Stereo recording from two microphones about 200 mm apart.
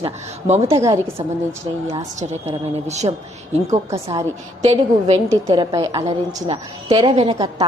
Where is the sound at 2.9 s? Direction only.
35° right (ahead or behind).